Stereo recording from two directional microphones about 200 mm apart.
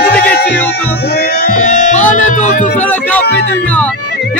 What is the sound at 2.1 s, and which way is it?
Speech, 40° left (ahead or behind).